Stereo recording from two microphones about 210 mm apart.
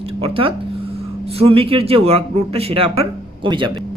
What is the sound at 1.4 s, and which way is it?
Speech, 25° right (ahead or behind).